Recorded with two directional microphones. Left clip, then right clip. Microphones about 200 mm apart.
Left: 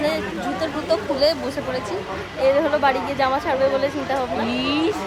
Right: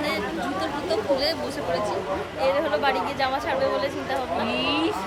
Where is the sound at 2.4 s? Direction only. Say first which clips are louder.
Left 5 dB; 25° left (ahead or behind).